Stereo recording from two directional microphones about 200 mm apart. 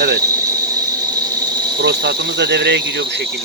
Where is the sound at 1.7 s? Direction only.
55° right (ahead or behind).